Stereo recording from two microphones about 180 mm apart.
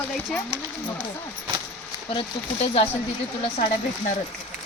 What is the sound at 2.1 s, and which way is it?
Speech, 35° left (ahead or behind).